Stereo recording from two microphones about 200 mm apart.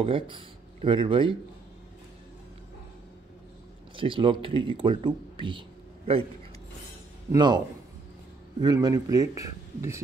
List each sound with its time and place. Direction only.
0.0 s speech: 25° right (ahead or behind)
3.9 s speech: 25° right (ahead or behind)
7.3 s a man's voice: 20° right (ahead or behind)